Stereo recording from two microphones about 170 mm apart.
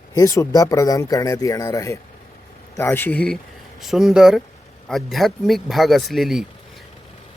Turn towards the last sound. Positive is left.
turn(degrees=0)  # may be behind; listen again after turning